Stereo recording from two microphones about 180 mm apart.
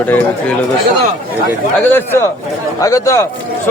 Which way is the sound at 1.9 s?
10° left (ahead or behind).